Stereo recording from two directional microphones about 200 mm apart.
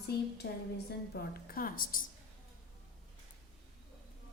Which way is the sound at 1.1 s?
50° left (ahead or behind).